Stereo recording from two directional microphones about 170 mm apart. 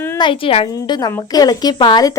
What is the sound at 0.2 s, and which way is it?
Speech, 30° left (ahead or behind).